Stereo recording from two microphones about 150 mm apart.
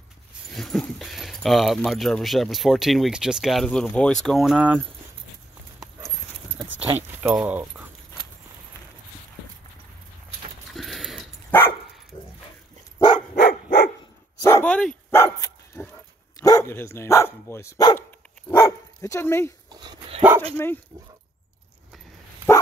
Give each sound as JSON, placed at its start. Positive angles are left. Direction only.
{"t": 0.5, "sound": "dog", "side_deg": 0}
{"t": 1.9, "sound": "speech", "side_deg": 0}
{"t": 6.7, "sound": "speech", "side_deg": -10}
{"t": 10.7, "sound": "a sound", "side_deg": 0}
{"t": 13.4, "sound": "dog", "side_deg": 75}
{"t": 14.4, "sound": "dog", "side_deg": 15}
{"t": 15.1, "sound": "dog", "side_deg": 20}
{"t": 16.3, "sound": "speech", "side_deg": 25}
{"t": 18.6, "sound": "dog", "side_deg": 20}
{"t": 19.7, "sound": "dog", "side_deg": -30}
{"t": 20.5, "sound": "speech", "side_deg": 15}
{"t": 22.5, "sound": "dog", "side_deg": 15}